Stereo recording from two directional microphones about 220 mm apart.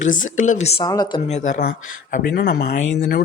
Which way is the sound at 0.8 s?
20° left (ahead or behind).